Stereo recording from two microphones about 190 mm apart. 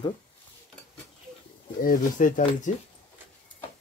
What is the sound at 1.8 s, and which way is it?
Speech, 45° left (ahead or behind).